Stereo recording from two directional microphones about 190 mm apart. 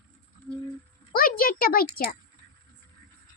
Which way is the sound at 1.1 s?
50° left (ahead or behind).